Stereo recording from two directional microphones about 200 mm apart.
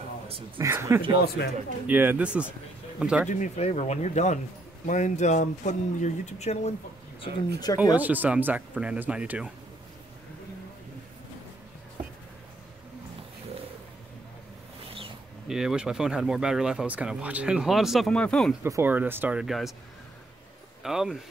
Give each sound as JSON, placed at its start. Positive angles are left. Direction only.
{"t": 0.6, "sound": "speech", "side_deg": -15}
{"t": 1.2, "sound": "speech", "side_deg": 50}
{"t": 1.9, "sound": "speech", "side_deg": -10}
{"t": 3.3, "sound": "speech", "side_deg": 40}
{"t": 7.2, "sound": "speech", "side_deg": 20}
{"t": 8.0, "sound": "speech", "side_deg": -10}
{"t": 15.4, "sound": "speech", "side_deg": -5}
{"t": 18.6, "sound": "speech", "side_deg": -10}
{"t": 20.8, "sound": "speech", "side_deg": 0}